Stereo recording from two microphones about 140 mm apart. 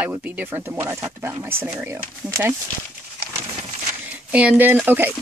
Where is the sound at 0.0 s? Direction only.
10° right (ahead or behind).